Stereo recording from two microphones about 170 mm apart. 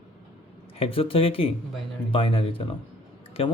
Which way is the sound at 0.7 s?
35° left (ahead or behind).